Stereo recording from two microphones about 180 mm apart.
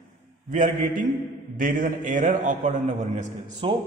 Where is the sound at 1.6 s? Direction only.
50° right (ahead or behind).